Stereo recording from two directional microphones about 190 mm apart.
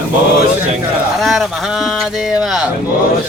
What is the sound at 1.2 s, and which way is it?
Speech, centre (ahead or behind).